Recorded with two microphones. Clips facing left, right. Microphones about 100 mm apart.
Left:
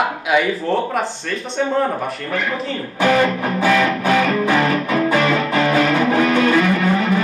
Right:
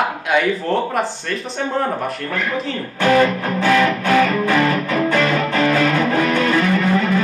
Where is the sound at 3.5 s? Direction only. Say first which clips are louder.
Right 1 dB; 15° left (ahead or behind).